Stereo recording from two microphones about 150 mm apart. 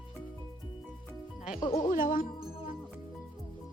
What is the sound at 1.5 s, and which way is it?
Speech, 25° left (ahead or behind).